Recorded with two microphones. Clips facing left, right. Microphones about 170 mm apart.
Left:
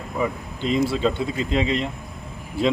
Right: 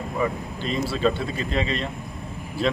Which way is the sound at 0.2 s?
15° left (ahead or behind).